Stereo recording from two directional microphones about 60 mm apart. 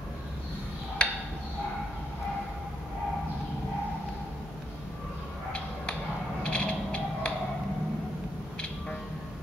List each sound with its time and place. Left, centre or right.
1.0 s tick-tock: centre
6.4 s music: centre